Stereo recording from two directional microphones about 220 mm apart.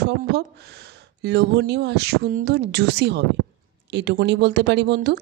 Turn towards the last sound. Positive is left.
turn(degrees=-45)  # may be behind; listen again after turning